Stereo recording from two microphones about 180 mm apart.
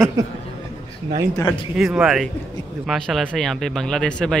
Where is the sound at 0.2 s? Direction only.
15° right (ahead or behind).